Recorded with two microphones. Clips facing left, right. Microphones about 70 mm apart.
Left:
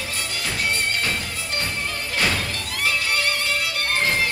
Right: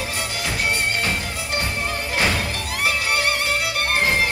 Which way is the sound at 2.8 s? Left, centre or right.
Centre.